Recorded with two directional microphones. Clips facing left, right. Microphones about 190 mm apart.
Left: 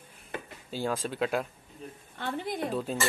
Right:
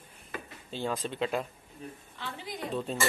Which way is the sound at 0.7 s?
5° left (ahead or behind).